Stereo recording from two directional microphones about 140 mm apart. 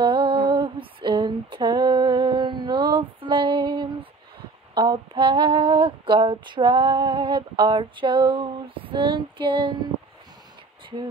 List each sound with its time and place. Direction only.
0.0 s female singing: 35° right (ahead or behind)